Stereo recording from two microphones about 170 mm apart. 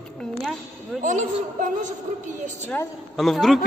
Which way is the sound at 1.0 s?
50° right (ahead or behind).